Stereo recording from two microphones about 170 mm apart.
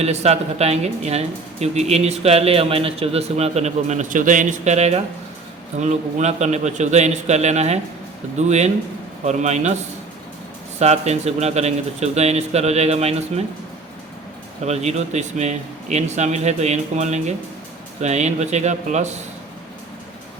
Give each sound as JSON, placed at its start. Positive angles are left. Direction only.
{"t": 0.0, "sound": "speech", "side_deg": -40}
{"t": 10.8, "sound": "speech", "side_deg": -40}
{"t": 14.6, "sound": "speech", "side_deg": -40}